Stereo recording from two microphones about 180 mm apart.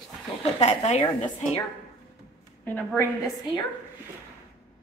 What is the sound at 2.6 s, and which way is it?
Speech, 10° left (ahead or behind).